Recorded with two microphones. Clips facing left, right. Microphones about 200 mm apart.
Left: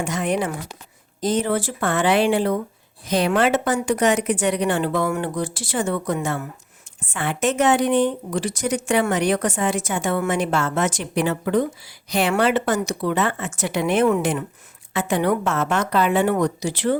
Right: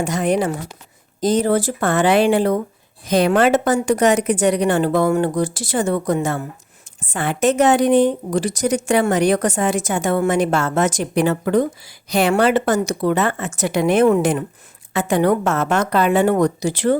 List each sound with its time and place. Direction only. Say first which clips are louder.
0.0 s a woman's voice: right 4 dB; 40° right (ahead or behind)